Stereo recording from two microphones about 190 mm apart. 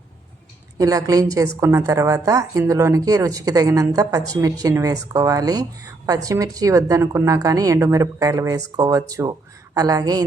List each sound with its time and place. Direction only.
0.8 s a woman's voice: 20° right (ahead or behind)